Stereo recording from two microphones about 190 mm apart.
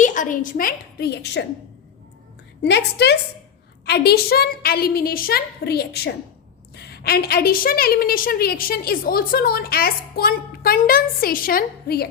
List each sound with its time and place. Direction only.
0.0 s a woman's voice: 40° left (ahead or behind); by 1.5 s 65° left (ahead or behind)
2.6 s a woman's voice: 60° left (ahead or behind)